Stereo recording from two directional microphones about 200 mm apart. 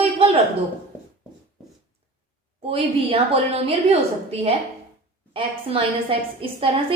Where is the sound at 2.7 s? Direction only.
30° right (ahead or behind).